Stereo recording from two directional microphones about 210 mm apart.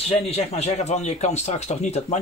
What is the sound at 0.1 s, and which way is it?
Speech, 30° left (ahead or behind).